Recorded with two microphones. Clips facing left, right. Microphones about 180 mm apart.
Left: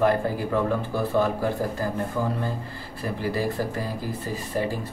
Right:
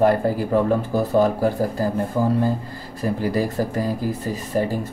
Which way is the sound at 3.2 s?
45° right (ahead or behind).